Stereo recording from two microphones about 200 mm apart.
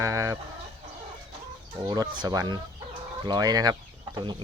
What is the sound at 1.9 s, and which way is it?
Speech, 20° right (ahead or behind).